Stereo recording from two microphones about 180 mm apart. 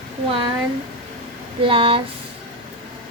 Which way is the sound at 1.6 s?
30° right (ahead or behind).